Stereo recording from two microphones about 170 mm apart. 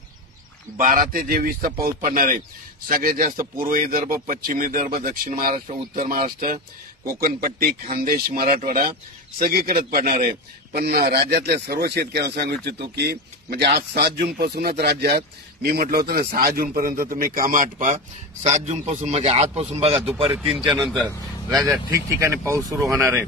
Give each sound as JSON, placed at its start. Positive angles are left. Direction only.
{"t": 0.7, "sound": "speech", "side_deg": -50}
{"t": 20.3, "sound": "a man's voice", "side_deg": 0}
{"t": 21.9, "sound": "speech", "side_deg": -15}